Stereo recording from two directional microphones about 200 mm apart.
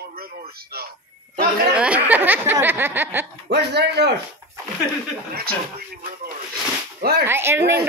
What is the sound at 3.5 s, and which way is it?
Speech, 55° right (ahead or behind).